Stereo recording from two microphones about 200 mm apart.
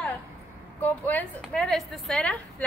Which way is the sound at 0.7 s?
10° left (ahead or behind).